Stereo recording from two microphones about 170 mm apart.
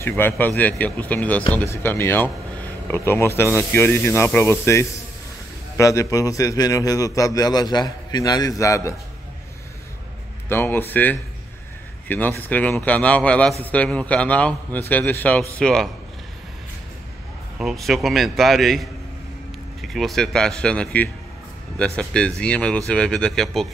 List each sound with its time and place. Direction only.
0.2 s a man's voice: 10° left (ahead or behind)
10.5 s speech: 10° left (ahead or behind)
17.6 s speech: centre (ahead or behind)